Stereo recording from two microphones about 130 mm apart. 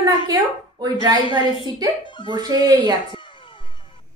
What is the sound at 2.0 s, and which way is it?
Speech, 40° left (ahead or behind).